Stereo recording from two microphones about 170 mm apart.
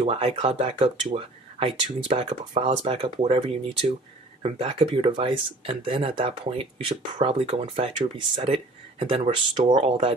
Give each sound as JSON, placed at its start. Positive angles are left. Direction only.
{"t": 0.0, "sound": "speech", "side_deg": -35}